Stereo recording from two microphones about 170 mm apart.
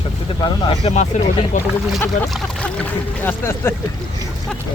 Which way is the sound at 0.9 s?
45° left (ahead or behind).